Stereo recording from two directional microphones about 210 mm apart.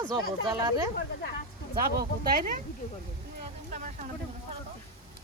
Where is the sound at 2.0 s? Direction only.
45° right (ahead or behind).